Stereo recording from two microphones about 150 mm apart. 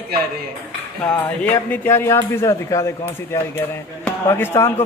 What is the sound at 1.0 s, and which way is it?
Speech, 10° left (ahead or behind).